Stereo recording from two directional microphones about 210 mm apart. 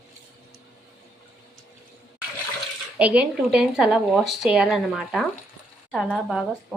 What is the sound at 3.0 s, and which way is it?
Speech, 5° right (ahead or behind).